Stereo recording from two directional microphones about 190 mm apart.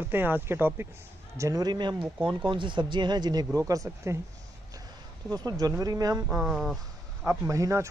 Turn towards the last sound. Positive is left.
turn(degrees=-15)  # may be behind; listen again after turning